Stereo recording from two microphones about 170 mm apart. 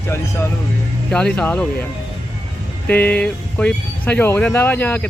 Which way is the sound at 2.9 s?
10° left (ahead or behind).